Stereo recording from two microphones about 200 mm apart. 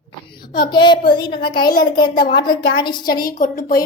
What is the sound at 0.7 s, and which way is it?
A child's voice, 20° left (ahead or behind).